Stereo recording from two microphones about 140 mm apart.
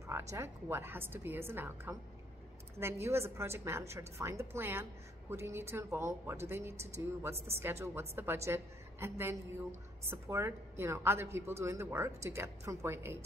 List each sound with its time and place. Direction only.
0.0 s a woman's voice: 20° right (ahead or behind)